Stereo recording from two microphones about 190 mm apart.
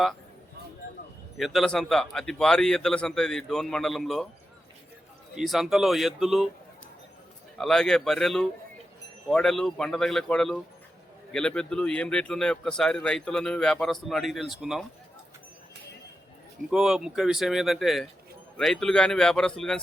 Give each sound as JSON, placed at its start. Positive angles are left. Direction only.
{"t": 1.4, "sound": "speech", "side_deg": 0}
{"t": 5.3, "sound": "speech", "side_deg": 0}
{"t": 7.6, "sound": "speech", "side_deg": 5}
{"t": 16.7, "sound": "speech", "side_deg": -5}